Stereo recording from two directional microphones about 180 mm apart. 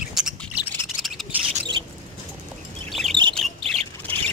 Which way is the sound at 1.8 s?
30° right (ahead or behind).